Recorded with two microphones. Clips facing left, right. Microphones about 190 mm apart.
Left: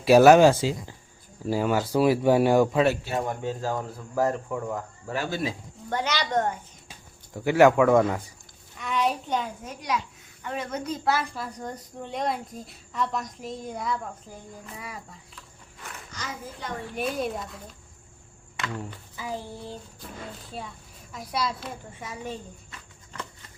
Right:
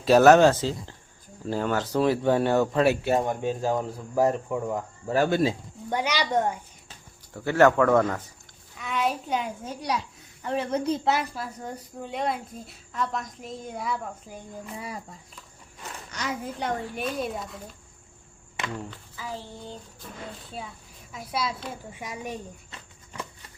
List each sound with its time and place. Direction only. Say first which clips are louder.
0.0 s speech: left 1 dB; 10° left (ahead or behind)
3.2 s speech: right 3 dB; 20° right (ahead or behind)
5.1 s speech: right 7 dB; 50° right (ahead or behind)
5.9 s speech: right 1 dB; 10° right (ahead or behind)
7.3 s speech: left 1 dB; 10° left (ahead or behind)
8.8 s a child's voice: left 1 dB; centre (ahead or behind)
9.6 s a woman's voice: even; 35° right (ahead or behind)
11.3 s a child's voice: even; 5° right (ahead or behind)
16.1 s a woman's voice: right 7 dB; 70° right (ahead or behind)
16.9 s a child's voice: left 1 dB; centre (ahead or behind)
18.9 s a child's voice: left 2 dB; 15° left (ahead or behind); by 22.0 s 5° right (ahead or behind)
22.0 s speech: even; 15° right (ahead or behind)